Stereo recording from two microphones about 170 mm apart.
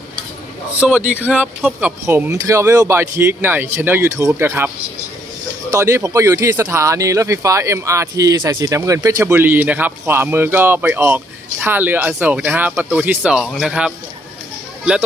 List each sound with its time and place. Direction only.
0.8 s speech: 10° right (ahead or behind)
5.7 s speech: 15° right (ahead or behind)